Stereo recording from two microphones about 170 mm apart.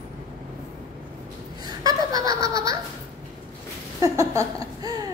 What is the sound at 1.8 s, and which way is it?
Laughter, 20° right (ahead or behind).